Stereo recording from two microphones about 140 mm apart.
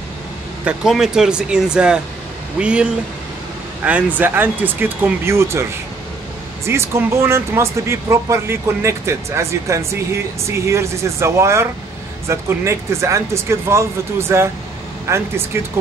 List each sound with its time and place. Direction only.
0.7 s speech: centre (ahead or behind); by 15.6 s 20° right (ahead or behind)